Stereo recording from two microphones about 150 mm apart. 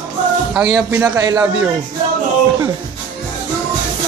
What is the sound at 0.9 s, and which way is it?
Music, 25° right (ahead or behind).